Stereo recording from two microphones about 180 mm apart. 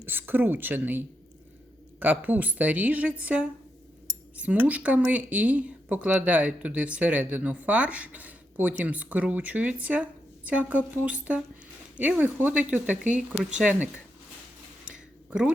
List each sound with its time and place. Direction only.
0.0 s a woman's voice: 10° right (ahead or behind)
4.6 s speech: 10° right (ahead or behind)
14.8 s a sound: 5° right (ahead or behind)